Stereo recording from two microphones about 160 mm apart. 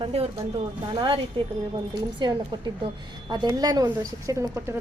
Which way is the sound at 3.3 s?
25° right (ahead or behind).